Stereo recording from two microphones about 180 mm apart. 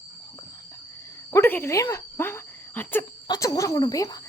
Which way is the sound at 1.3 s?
15° left (ahead or behind).